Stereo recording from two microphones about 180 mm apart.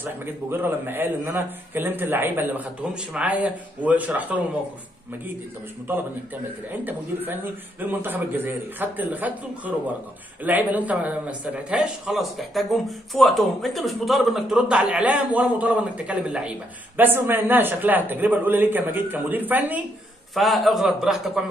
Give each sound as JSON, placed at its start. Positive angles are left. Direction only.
{"t": 0.0, "sound": "a man's voice", "side_deg": -10}
{"t": 6.7, "sound": "a man's voice", "side_deg": -10}